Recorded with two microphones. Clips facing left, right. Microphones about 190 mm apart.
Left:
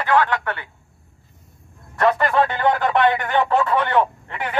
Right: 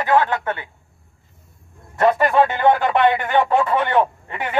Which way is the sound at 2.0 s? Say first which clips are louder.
Right 2 dB; 20° right (ahead or behind).